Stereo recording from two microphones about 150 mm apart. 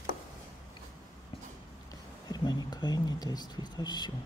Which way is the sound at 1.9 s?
25° left (ahead or behind).